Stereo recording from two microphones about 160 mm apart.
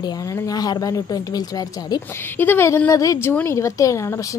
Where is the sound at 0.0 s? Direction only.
25° left (ahead or behind).